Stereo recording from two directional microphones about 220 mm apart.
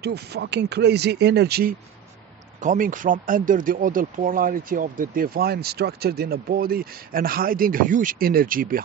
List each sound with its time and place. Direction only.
0.0 s speech: 50° right (ahead or behind)